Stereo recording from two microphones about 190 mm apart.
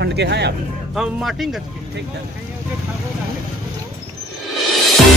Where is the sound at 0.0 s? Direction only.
65° right (ahead or behind).